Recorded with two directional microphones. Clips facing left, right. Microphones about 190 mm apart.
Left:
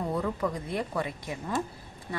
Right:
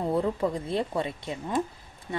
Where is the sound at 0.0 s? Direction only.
25° right (ahead or behind).